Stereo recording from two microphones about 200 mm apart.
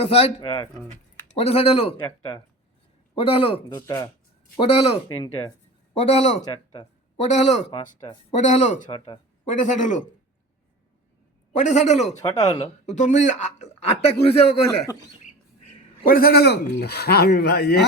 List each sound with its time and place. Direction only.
0.0 s speech: 30° left (ahead or behind)
4.7 s speech: 30° left (ahead or behind)
11.5 s speech: 35° left (ahead or behind)
12.2 s speech: 20° left (ahead or behind)
15.7 s speech: 45° left (ahead or behind)